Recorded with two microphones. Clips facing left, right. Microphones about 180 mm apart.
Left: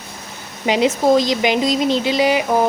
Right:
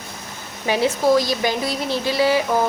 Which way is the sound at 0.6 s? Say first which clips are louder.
Left 3 dB; 20° left (ahead or behind).